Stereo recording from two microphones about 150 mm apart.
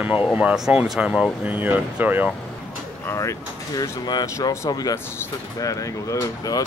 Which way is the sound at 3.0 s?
20° left (ahead or behind).